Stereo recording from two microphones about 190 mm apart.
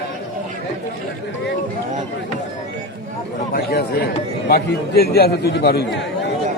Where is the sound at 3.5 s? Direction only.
55° left (ahead or behind).